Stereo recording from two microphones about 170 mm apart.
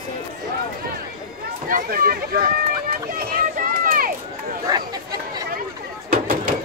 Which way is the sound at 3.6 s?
55° right (ahead or behind).